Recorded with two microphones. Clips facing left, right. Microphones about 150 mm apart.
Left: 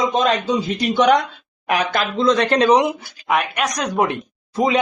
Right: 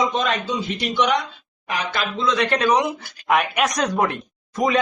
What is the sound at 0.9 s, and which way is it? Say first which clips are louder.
Speech: left 6 dB; 55° left (ahead or behind).